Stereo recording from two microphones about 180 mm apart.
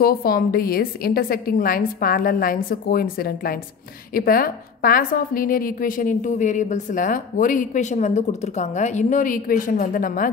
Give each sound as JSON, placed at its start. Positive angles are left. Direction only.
{"t": 0.0, "sound": "a woman's voice", "side_deg": 55}